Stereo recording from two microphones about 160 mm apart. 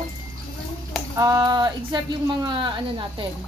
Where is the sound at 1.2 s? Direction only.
25° right (ahead or behind).